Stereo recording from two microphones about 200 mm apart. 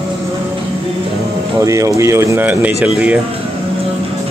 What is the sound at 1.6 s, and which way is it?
Speech, 15° right (ahead or behind).